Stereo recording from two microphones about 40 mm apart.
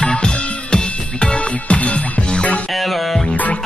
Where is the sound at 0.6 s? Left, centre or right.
Left.